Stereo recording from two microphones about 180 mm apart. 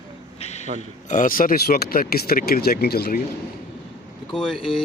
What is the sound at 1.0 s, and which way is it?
Speech, 45° left (ahead or behind).